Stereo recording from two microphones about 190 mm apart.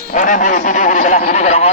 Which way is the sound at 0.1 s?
45° left (ahead or behind).